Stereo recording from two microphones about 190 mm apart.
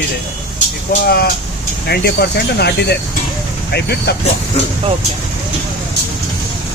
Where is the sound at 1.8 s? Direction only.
60° left (ahead or behind).